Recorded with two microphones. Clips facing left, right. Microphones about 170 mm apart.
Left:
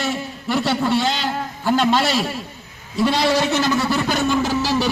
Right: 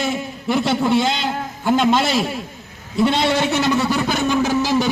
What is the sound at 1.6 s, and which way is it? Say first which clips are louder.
A man's voice: right 1 dB; 20° right (ahead or behind).